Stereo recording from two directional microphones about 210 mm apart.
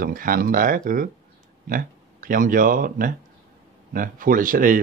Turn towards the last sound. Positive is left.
turn(degrees=-40)  # may be behind; listen again after turning